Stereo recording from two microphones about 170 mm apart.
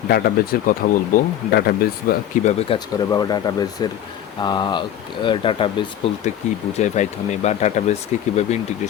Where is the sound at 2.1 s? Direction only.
55° left (ahead or behind).